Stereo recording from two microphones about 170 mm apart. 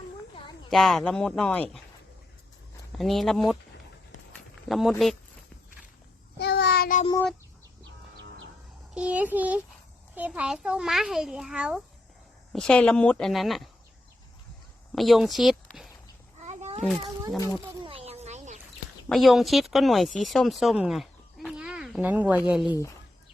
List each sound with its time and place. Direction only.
0.7 s a child's voice: centre (ahead or behind)
3.0 s a child's voice: centre (ahead or behind)
4.7 s a child's voice: centre (ahead or behind)
6.4 s child singing: 75° left (ahead or behind)
9.0 s a child's voice: 10° right (ahead or behind)
12.5 s a child's voice: 5° left (ahead or behind)
14.9 s speech: centre (ahead or behind)
16.5 s a sound: 40° right (ahead or behind)
17.3 s speech: 20° left (ahead or behind)
17.8 s a sound: 35° right (ahead or behind)
19.0 s a child's voice: centre (ahead or behind)